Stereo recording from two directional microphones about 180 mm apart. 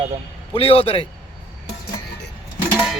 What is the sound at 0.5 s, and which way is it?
Speech, 30° left (ahead or behind).